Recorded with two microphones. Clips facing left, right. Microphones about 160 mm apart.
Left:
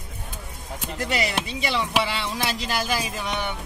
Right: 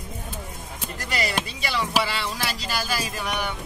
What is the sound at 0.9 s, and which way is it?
Speech, 20° left (ahead or behind).